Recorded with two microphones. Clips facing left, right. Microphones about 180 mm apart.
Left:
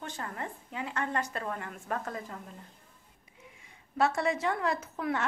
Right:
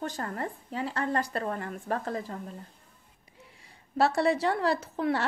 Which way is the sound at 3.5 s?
35° right (ahead or behind).